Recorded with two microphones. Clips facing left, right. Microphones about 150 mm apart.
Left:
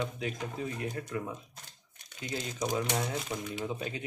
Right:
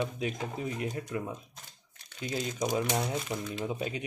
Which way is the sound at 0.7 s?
20° right (ahead or behind).